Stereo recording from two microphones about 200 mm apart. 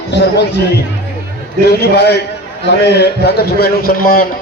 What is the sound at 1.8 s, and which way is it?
A man's voice, 55° left (ahead or behind).